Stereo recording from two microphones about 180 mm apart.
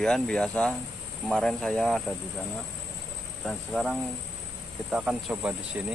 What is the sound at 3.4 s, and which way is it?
Speech, centre (ahead or behind).